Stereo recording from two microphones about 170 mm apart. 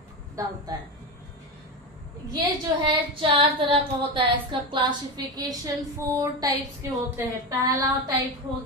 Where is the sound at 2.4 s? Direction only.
30° right (ahead or behind).